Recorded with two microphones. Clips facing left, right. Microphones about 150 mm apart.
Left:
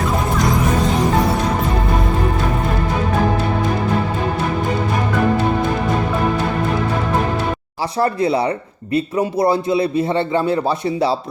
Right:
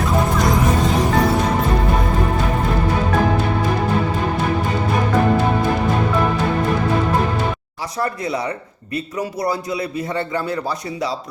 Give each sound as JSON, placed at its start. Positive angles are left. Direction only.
{"t": 7.9, "sound": "speech", "side_deg": 30}